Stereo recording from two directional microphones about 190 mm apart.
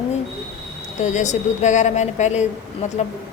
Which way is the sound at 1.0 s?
40° left (ahead or behind).